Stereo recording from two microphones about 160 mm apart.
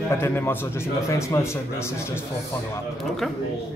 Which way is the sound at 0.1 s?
15° left (ahead or behind).